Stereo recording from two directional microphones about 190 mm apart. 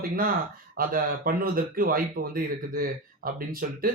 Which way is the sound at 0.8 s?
50° right (ahead or behind).